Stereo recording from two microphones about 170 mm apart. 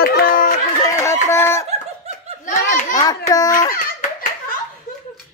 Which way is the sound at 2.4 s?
50° left (ahead or behind).